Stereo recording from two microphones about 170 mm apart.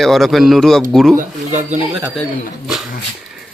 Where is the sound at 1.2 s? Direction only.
45° right (ahead or behind).